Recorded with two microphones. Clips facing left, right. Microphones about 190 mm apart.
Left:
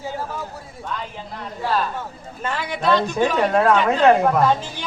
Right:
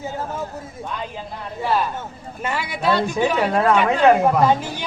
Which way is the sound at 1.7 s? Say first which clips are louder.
Right 2 dB; 10° right (ahead or behind).